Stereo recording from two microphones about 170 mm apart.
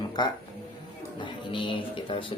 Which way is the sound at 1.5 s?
30° left (ahead or behind).